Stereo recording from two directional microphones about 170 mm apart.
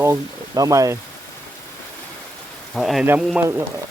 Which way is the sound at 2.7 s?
Centre (ahead or behind).